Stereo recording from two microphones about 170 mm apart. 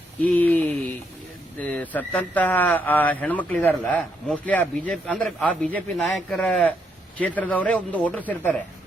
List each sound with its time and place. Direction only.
0.2 s speech: 10° left (ahead or behind)